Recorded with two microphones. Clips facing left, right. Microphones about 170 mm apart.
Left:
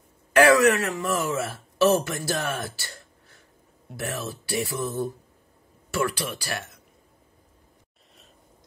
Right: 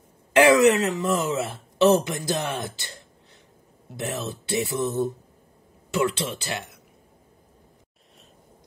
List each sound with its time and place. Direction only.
0.3 s speech: 20° right (ahead or behind)